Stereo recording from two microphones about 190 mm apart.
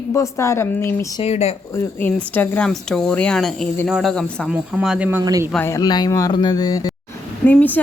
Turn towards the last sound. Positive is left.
turn(degrees=10)  # may be behind; listen again after turning